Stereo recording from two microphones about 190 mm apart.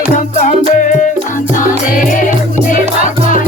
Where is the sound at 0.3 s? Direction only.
40° left (ahead or behind).